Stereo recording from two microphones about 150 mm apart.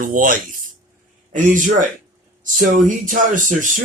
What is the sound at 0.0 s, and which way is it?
Speech, 65° right (ahead or behind).